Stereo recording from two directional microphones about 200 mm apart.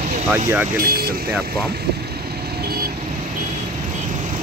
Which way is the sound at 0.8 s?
50° right (ahead or behind).